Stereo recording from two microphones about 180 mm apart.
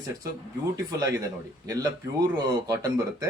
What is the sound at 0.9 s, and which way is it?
Speech, 20° right (ahead or behind).